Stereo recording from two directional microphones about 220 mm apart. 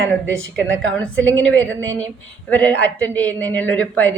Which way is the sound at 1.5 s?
5° left (ahead or behind).